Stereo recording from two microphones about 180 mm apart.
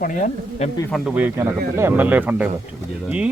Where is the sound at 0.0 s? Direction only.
45° left (ahead or behind).